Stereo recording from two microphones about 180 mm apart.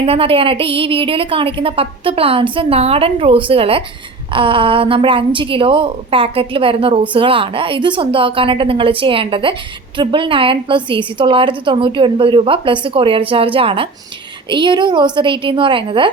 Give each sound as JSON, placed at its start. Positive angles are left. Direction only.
{"t": 0.0, "sound": "a woman's voice", "side_deg": -30}